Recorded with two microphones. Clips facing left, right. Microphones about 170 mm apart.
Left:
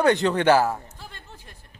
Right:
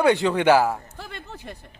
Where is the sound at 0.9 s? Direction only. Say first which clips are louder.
Right 6 dB; 75° right (ahead or behind).